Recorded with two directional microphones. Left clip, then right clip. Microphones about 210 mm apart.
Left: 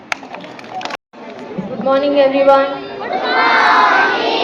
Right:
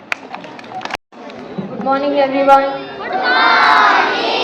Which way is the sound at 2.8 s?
35° right (ahead or behind).